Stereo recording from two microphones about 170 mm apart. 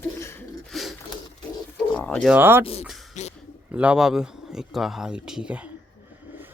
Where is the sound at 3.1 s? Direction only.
45° left (ahead or behind).